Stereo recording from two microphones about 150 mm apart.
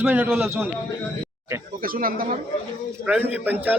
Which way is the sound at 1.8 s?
70° right (ahead or behind).